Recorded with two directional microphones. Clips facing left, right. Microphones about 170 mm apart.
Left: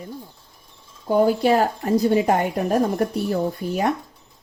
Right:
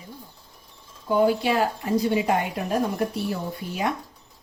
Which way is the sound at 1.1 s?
40° left (ahead or behind).